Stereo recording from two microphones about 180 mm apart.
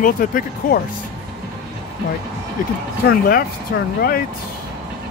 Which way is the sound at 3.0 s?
55° left (ahead or behind).